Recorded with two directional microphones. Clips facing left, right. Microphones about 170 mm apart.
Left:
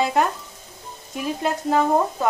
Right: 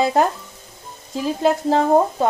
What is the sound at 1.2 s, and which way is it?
Stir, 30° right (ahead or behind).